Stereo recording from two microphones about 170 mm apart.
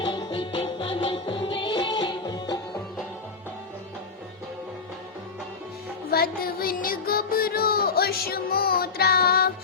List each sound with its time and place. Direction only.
0.0 s music: 25° left (ahead or behind)
6.1 s music: 60° left (ahead or behind)